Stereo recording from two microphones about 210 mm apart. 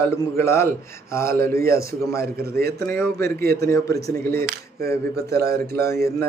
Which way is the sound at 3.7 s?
15° left (ahead or behind).